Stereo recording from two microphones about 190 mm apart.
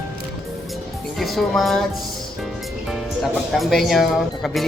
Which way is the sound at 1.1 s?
Centre (ahead or behind).